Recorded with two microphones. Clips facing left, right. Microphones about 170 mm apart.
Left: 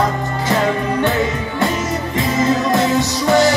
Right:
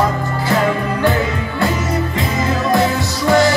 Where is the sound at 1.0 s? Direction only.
20° left (ahead or behind).